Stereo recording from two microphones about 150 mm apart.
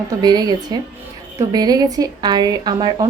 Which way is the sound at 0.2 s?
25° right (ahead or behind).